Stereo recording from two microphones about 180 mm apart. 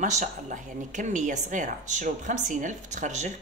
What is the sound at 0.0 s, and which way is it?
A woman's voice, 40° right (ahead or behind).